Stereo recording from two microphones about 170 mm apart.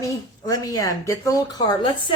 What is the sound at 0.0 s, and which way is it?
A woman's voice, 20° left (ahead or behind).